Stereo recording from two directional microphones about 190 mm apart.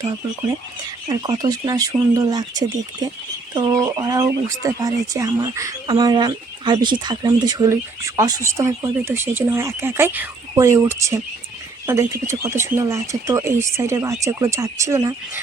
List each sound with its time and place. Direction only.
1.0 s speech: 20° right (ahead or behind)